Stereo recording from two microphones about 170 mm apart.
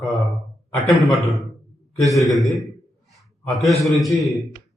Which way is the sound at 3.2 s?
Centre (ahead or behind).